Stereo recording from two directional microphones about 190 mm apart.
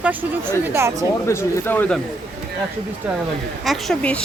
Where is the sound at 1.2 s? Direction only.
15° left (ahead or behind).